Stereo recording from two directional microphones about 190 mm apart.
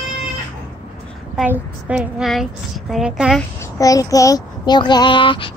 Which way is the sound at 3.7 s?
20° left (ahead or behind).